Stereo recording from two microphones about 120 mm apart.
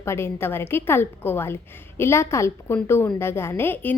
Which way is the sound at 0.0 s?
20° left (ahead or behind).